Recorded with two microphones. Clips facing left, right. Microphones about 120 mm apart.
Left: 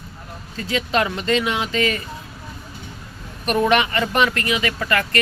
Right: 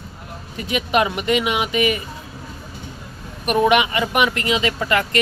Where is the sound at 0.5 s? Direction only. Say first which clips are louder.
Right 2 dB; 15° right (ahead or behind).